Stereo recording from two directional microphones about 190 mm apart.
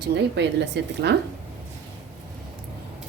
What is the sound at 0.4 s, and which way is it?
Speech, 65° right (ahead or behind).